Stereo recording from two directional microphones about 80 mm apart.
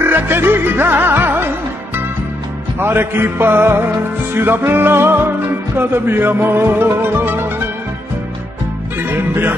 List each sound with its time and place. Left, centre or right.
0.0 s music: right
2.8 s music: right
9.3 s music: right